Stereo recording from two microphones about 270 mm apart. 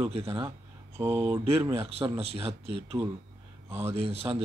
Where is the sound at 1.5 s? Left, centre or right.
Right.